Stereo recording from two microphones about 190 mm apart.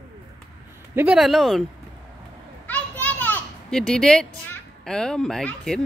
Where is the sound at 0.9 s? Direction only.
10° right (ahead or behind).